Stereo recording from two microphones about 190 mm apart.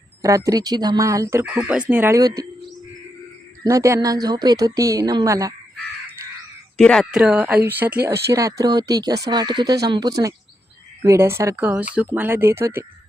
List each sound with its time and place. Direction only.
0.2 s speech: 15° right (ahead or behind)
3.6 s speech: 15° right (ahead or behind)
6.7 s speech: 5° left (ahead or behind); by 12.8 s 15° right (ahead or behind)